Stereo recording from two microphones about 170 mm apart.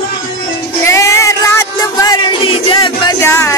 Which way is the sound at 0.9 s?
20° left (ahead or behind).